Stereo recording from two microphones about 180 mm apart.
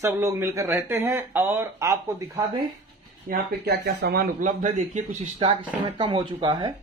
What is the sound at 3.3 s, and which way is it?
A man's voice, 65° right (ahead or behind).